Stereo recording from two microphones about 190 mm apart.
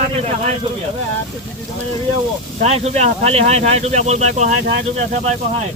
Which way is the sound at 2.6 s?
35° right (ahead or behind).